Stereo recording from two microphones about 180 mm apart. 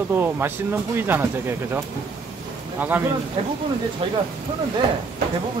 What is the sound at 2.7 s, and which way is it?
Speech, 10° right (ahead or behind).